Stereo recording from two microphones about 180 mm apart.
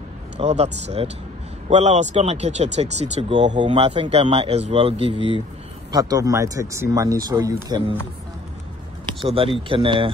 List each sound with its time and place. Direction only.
0.4 s speech: 35° right (ahead or behind)
5.9 s speech: 20° right (ahead or behind)
9.2 s speech: 30° right (ahead or behind)